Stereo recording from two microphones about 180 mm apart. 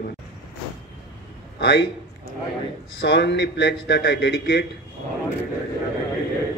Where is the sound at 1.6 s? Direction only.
70° left (ahead or behind).